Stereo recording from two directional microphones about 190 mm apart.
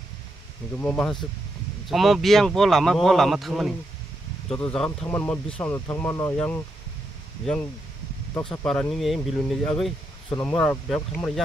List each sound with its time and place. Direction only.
0.7 s speech: 5° left (ahead or behind)
8.4 s speech: centre (ahead or behind)
10.3 s speech: 20° left (ahead or behind)
10.6 s speech: centre (ahead or behind)